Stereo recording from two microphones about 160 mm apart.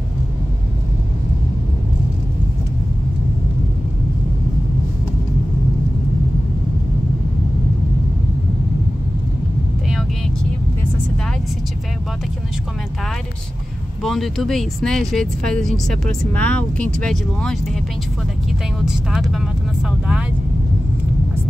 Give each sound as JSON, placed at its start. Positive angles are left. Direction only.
{"t": 14.0, "sound": "speech", "side_deg": 0}
{"t": 18.9, "sound": "speech", "side_deg": -5}